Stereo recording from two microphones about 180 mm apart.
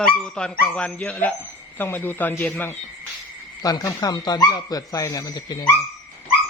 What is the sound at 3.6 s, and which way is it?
Speech, 20° left (ahead or behind).